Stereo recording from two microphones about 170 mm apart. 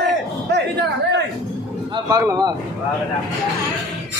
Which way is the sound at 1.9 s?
20° right (ahead or behind).